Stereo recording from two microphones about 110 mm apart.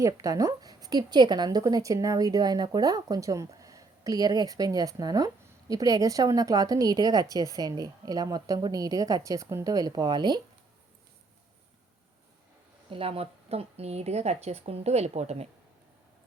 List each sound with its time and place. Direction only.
0.0 s a woman's voice: 30° right (ahead or behind)
12.9 s speech: 60° right (ahead or behind); by 15.4 s 80° right